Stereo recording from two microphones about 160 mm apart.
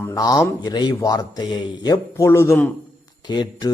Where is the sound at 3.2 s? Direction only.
25° left (ahead or behind).